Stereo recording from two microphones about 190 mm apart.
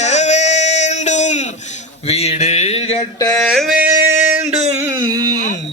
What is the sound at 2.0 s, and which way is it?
Mantra, 35° left (ahead or behind).